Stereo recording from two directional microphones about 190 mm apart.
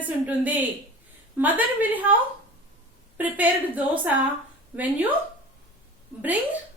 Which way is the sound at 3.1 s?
10° right (ahead or behind).